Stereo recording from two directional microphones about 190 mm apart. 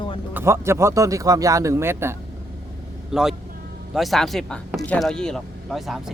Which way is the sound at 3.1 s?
Centre (ahead or behind).